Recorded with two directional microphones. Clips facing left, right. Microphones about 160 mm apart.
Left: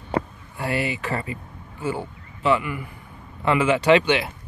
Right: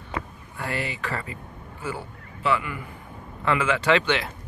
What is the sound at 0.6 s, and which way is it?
Speech, 15° left (ahead or behind).